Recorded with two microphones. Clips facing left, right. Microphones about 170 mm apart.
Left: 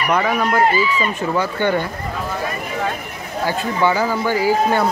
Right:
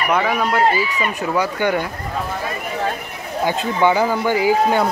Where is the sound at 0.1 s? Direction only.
Centre (ahead or behind).